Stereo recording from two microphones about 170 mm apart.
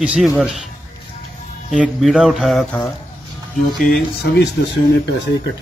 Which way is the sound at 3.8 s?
65° left (ahead or behind).